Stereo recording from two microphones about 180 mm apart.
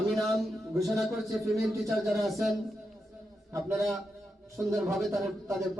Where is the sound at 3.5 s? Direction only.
15° right (ahead or behind).